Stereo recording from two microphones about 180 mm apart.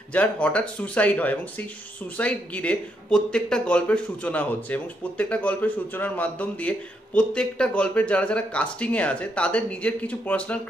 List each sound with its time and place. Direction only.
0.1 s speech: 5° left (ahead or behind)